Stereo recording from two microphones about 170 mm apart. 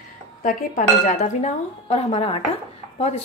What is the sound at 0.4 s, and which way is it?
Speech, 50° left (ahead or behind).